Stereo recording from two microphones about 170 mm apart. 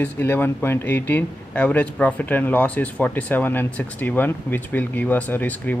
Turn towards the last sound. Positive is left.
turn(degrees=10)  # may be behind; listen again after turning